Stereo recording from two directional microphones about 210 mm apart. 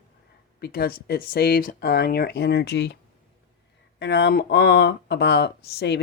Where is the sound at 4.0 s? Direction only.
55° left (ahead or behind).